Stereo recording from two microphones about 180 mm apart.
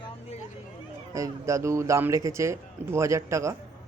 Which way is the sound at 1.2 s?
15° right (ahead or behind).